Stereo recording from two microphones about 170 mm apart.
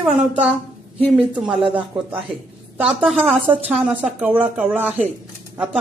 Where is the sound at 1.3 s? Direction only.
Centre (ahead or behind).